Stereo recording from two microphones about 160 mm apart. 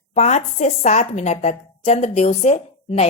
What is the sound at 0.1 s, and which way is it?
A woman's voice, 45° left (ahead or behind).